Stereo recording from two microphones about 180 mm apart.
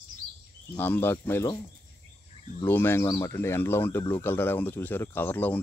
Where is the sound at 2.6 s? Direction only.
10° left (ahead or behind).